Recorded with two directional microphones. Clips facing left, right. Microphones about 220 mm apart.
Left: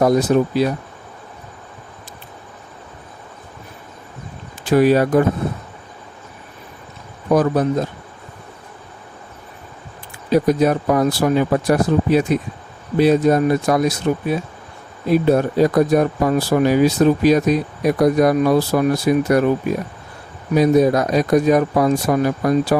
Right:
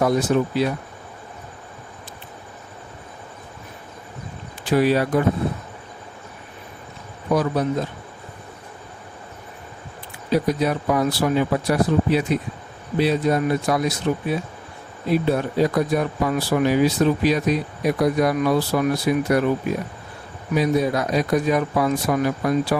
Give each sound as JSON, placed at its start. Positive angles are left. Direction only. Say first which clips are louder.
{"t": 0.0, "sound": "speech", "louder": "left 4 dB", "side_deg": 40}
{"t": 4.6, "sound": "speech", "louder": "left 5 dB", "side_deg": 45}
{"t": 7.3, "sound": "speech", "louder": "left 5 dB", "side_deg": 50}
{"t": 10.3, "sound": "speech", "louder": "left 5 dB", "side_deg": 50}
{"t": 15.1, "sound": "speech", "louder": "left 5 dB", "side_deg": 45}
{"t": 20.5, "sound": "speech", "louder": "left 6 dB", "side_deg": 45}